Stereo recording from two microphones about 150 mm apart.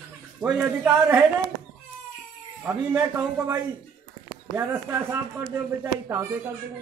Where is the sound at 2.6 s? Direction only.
15° right (ahead or behind).